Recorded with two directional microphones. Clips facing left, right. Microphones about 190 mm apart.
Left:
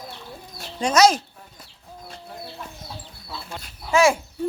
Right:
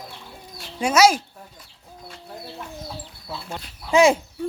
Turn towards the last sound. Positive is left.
turn(degrees=-20)  # may be behind; listen again after turning